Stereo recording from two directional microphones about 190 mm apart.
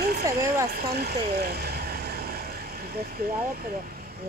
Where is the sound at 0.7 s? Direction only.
55° right (ahead or behind).